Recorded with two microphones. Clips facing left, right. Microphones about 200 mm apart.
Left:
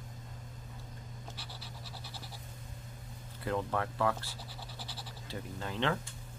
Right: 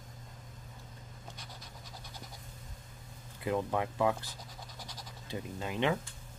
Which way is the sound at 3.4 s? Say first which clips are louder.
Right 2 dB; 15° right (ahead or behind).